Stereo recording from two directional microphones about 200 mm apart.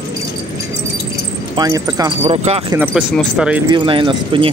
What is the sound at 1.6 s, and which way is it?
Speech, 20° right (ahead or behind).